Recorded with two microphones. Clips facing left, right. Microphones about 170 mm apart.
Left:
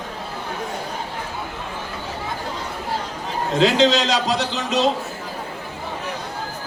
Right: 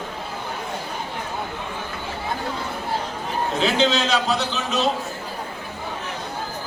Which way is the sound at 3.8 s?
35° left (ahead or behind).